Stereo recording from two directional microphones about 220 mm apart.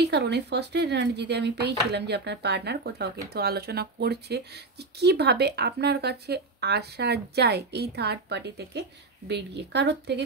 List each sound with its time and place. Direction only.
0.0 s speech: 50° right (ahead or behind)